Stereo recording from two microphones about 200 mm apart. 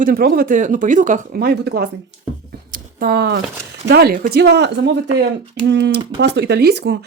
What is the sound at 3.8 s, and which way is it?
Speech, 50° right (ahead or behind).